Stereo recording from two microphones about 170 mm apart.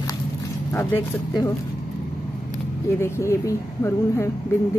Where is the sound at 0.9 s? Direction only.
25° left (ahead or behind).